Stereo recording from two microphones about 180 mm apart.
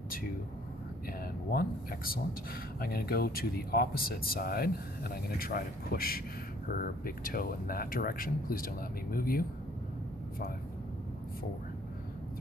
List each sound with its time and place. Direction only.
1.5 s speech: 55° left (ahead or behind)